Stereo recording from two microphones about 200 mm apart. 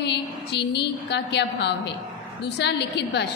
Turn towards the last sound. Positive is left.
turn(degrees=60)  # may be behind; listen again after turning